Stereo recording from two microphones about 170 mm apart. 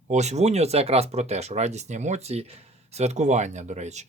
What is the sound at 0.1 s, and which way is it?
Speech, 40° right (ahead or behind).